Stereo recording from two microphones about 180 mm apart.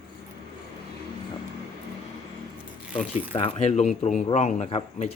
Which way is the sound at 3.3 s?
30° left (ahead or behind).